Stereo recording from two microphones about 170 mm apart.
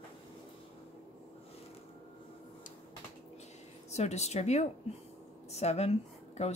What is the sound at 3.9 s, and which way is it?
Speech, 40° left (ahead or behind).